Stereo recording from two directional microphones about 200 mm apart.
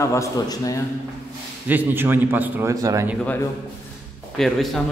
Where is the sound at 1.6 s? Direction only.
10° right (ahead or behind).